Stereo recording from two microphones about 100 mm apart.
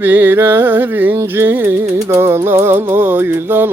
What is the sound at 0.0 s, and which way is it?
Music, 20° right (ahead or behind).